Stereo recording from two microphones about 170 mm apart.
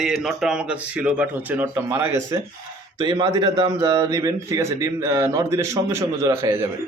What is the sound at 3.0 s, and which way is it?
A man's voice, 25° right (ahead or behind).